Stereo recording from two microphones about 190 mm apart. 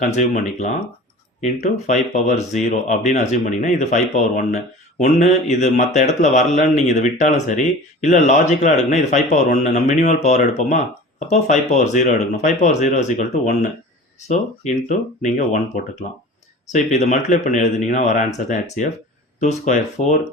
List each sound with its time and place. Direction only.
0.0 s speech: 40° left (ahead or behind)